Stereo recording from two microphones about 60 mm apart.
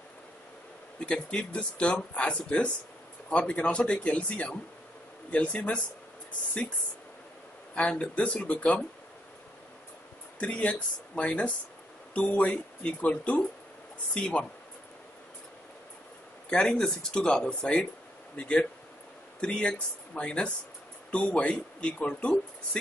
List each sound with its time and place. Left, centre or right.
0.9 s speech: centre
7.7 s speech: centre
10.4 s speech: left
16.4 s speech: centre